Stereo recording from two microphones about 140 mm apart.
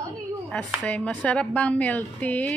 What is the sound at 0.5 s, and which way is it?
A woman's voice, 5° left (ahead or behind).